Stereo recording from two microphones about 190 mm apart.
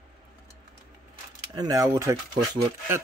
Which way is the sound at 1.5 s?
20° right (ahead or behind).